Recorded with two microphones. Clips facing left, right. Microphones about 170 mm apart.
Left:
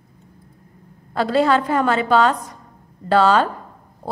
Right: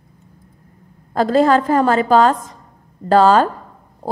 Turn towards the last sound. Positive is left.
turn(degrees=-45)  # may be behind; listen again after turning